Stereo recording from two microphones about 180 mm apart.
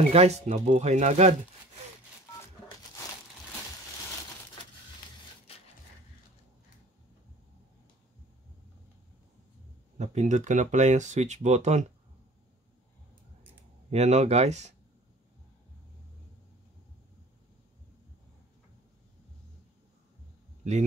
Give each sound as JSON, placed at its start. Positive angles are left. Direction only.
{"t": 0.1, "sound": "speech", "side_deg": -35}
{"t": 9.9, "sound": "speech", "side_deg": -40}
{"t": 13.8, "sound": "speech", "side_deg": -40}